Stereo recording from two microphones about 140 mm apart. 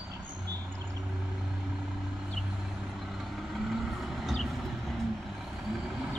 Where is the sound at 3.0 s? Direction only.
Centre (ahead or behind).